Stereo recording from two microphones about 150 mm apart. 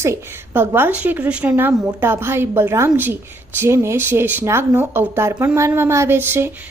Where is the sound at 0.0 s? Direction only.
15° right (ahead or behind).